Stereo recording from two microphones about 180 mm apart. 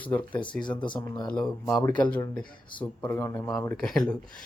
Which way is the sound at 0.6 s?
25° left (ahead or behind).